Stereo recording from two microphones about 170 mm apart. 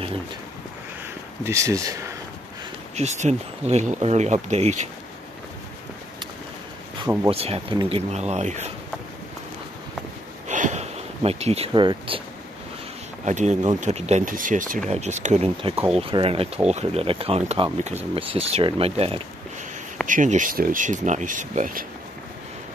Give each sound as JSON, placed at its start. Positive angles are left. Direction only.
{"t": 1.4, "sound": "speech", "side_deg": -20}
{"t": 3.0, "sound": "speech", "side_deg": -40}
{"t": 7.2, "sound": "speech", "side_deg": -35}
{"t": 8.1, "sound": "speech", "side_deg": -40}
{"t": 10.5, "sound": "a sound", "side_deg": -45}
{"t": 13.2, "sound": "speech", "side_deg": -45}
{"t": 20.1, "sound": "speech", "side_deg": -50}